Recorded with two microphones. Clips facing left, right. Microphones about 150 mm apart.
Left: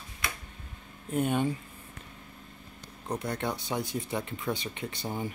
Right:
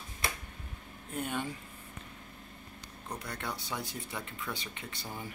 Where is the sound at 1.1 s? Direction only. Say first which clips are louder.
Left 8 dB; 20° left (ahead or behind).